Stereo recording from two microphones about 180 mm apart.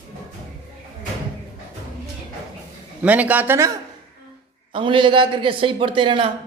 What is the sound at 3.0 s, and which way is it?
Speech, 10° right (ahead or behind).